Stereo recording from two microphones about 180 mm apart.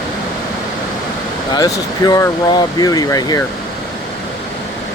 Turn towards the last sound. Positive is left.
turn(degrees=20)  # may be behind; listen again after turning